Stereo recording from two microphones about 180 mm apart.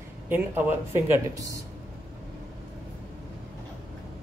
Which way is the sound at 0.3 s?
10° right (ahead or behind).